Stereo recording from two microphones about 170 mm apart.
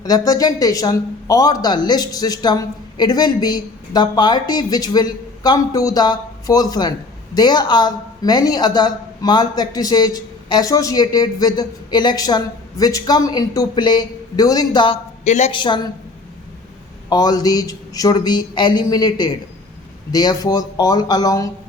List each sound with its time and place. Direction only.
0.0 s speech: 20° left (ahead or behind)
15.2 s a woman's voice: 40° left (ahead or behind)
15.5 s speech: 25° left (ahead or behind)
17.1 s speech: 25° left (ahead or behind)